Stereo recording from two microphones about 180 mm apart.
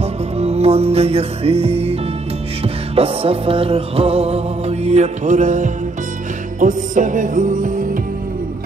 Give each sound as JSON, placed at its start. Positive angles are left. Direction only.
{"t": 0.0, "sound": "music", "side_deg": -35}